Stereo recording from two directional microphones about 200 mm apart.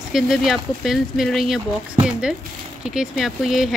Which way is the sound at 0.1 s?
Centre (ahead or behind).